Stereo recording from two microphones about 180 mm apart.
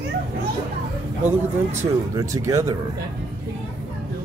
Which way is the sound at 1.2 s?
15° right (ahead or behind).